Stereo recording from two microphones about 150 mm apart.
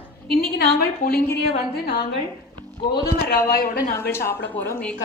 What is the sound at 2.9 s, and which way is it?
Speech, 90° left.